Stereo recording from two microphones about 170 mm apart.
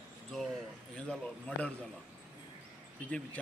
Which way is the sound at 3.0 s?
10° left (ahead or behind).